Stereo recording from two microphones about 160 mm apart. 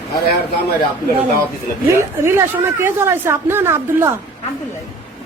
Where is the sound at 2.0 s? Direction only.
15° right (ahead or behind).